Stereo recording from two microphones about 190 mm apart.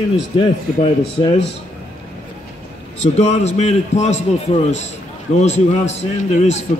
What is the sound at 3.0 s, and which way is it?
A man's voice, 35° left (ahead or behind).